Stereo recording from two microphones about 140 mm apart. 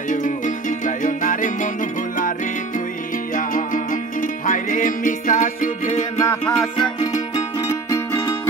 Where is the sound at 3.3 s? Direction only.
70° left (ahead or behind).